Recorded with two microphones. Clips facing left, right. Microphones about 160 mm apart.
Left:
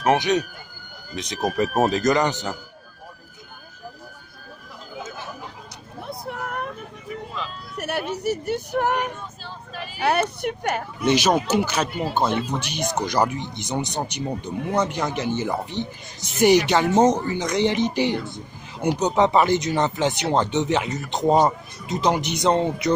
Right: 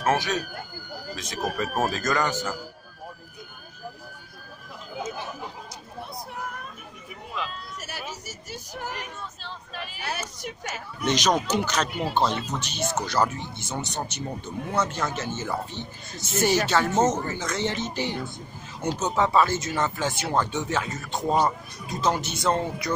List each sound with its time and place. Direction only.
0.0 s speech: 20° left (ahead or behind)
6.0 s a sound: 65° left (ahead or behind)
7.7 s speech: 60° left (ahead or behind)
11.1 s speech: 10° left (ahead or behind)
12.3 s speech: 55° left (ahead or behind)
12.5 s speech: 15° left (ahead or behind)